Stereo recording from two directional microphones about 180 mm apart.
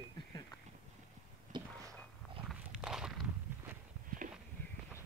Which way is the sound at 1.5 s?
25° right (ahead or behind).